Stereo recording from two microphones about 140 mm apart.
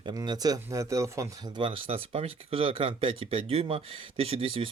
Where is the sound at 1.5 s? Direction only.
40° right (ahead or behind).